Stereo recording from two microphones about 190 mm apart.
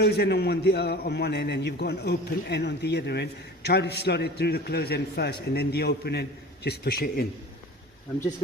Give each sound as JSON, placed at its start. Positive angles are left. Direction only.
{"t": 0.0, "sound": "a man's voice", "side_deg": 60}